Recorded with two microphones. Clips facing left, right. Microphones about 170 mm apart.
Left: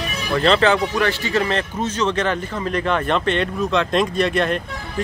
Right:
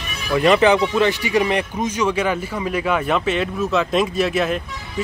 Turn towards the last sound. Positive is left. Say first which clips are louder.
# even
turn(degrees=-5)  # may be behind; listen again after turning